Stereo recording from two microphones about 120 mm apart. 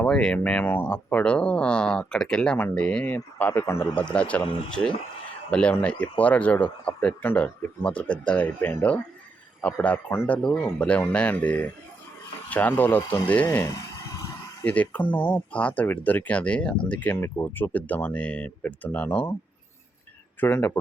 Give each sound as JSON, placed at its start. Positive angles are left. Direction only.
{"t": 0.0, "sound": "speech", "side_deg": 5}
{"t": 3.9, "sound": "speech", "side_deg": 10}
{"t": 5.5, "sound": "speech", "side_deg": 10}
{"t": 20.4, "sound": "speech", "side_deg": 20}